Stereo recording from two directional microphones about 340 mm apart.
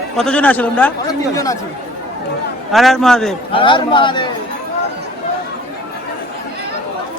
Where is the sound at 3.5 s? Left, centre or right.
Centre.